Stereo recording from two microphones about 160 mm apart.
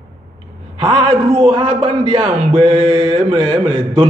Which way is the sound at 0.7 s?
35° right (ahead or behind).